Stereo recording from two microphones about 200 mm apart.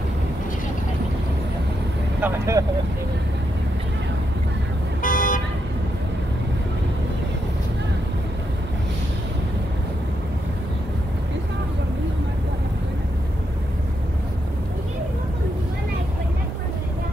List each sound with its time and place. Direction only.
2.2 s speech: 15° right (ahead or behind)
5.0 s vehicle: 40° left (ahead or behind)